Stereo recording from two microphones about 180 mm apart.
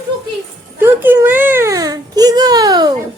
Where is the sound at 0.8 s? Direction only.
10° right (ahead or behind).